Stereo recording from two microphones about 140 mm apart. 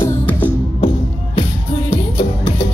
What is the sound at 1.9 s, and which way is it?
Music, 40° left (ahead or behind).